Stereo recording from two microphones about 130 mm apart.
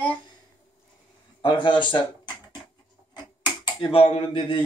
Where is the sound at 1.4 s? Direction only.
40° left (ahead or behind).